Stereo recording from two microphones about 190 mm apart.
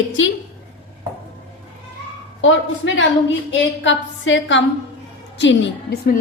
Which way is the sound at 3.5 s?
75° left (ahead or behind).